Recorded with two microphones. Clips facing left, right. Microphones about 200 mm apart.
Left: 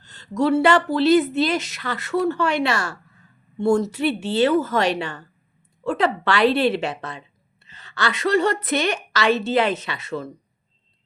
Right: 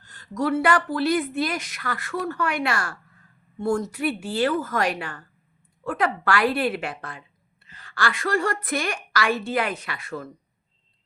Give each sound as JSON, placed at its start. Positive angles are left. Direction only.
{"t": 0.0, "sound": "a woman's voice", "side_deg": 25}